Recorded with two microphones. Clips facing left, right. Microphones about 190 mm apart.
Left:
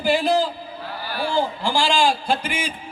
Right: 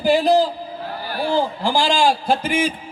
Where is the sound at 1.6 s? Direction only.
40° right (ahead or behind).